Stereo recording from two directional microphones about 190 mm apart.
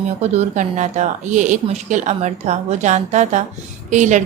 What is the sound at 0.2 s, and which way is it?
A woman's voice, 40° right (ahead or behind).